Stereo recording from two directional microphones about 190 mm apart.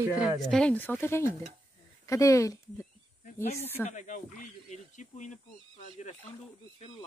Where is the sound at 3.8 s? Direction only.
40° left (ahead or behind).